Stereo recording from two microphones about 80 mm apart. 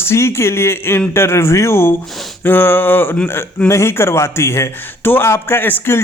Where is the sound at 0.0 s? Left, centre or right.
Left.